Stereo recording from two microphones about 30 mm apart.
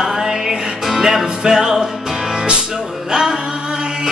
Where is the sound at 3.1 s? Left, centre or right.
Right.